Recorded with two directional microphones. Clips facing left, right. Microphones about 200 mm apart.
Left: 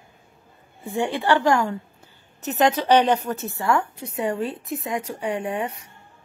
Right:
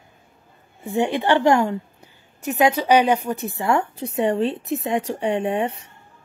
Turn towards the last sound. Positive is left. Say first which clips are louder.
# right 5 dB
turn(degrees=-25)  # may be behind; listen again after turning